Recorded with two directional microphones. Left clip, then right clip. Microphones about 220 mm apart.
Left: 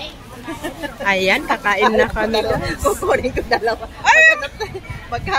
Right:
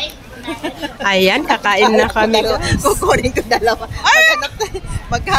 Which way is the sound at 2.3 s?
50° right (ahead or behind).